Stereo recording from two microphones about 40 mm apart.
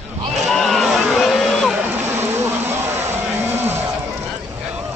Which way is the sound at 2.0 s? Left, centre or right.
Right.